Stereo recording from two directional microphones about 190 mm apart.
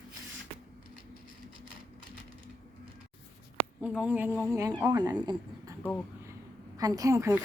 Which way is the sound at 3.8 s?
10° right (ahead or behind).